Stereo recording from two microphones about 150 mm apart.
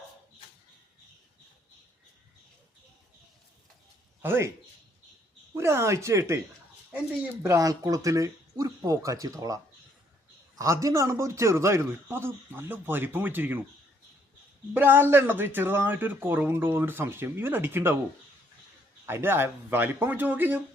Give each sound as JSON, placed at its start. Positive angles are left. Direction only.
{"t": 4.2, "sound": "speech", "side_deg": -15}
{"t": 5.5, "sound": "speech", "side_deg": -15}
{"t": 7.4, "sound": "speech", "side_deg": -20}
{"t": 10.6, "sound": "speech", "side_deg": -20}
{"t": 14.7, "sound": "speech", "side_deg": -10}
{"t": 19.0, "sound": "speech", "side_deg": -15}